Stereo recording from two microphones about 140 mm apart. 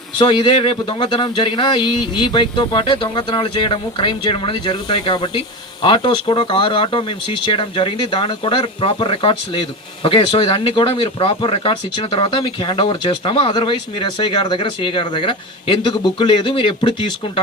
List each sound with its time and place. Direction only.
0.2 s speech: 35° left (ahead or behind)